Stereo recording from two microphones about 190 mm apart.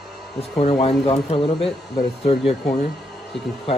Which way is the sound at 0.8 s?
30° left (ahead or behind).